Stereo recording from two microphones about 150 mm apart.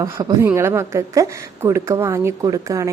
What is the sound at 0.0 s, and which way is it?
A woman's voice, 25° right (ahead or behind).